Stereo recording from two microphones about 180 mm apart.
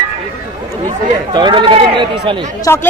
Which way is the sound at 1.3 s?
25° right (ahead or behind).